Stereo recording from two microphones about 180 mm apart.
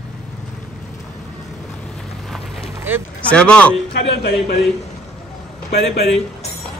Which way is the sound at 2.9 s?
10° right (ahead or behind).